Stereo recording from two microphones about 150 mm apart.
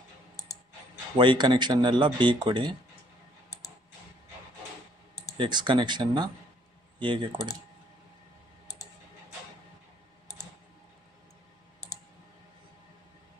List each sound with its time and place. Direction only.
1.1 s speech: 35° right (ahead or behind)
5.4 s speech: 30° right (ahead or behind)